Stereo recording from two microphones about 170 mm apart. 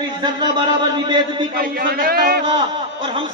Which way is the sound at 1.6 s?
60° right (ahead or behind).